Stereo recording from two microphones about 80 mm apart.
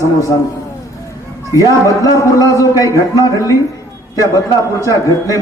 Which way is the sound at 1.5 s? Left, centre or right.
Left.